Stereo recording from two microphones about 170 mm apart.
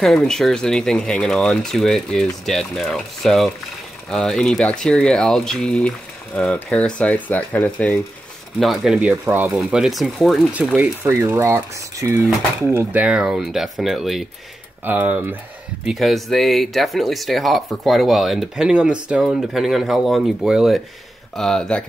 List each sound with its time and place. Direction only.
0.0 s speech: 5° left (ahead or behind)